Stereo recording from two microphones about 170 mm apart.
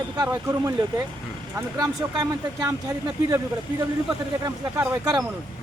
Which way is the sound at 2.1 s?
20° right (ahead or behind).